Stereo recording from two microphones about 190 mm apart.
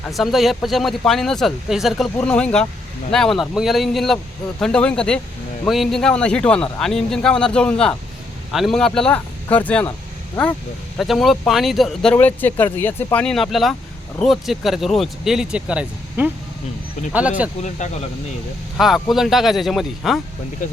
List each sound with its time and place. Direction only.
0.1 s speech: centre (ahead or behind)
10.9 s speech: centre (ahead or behind)
17.6 s speech: 40° left (ahead or behind)
18.8 s speech: centre (ahead or behind)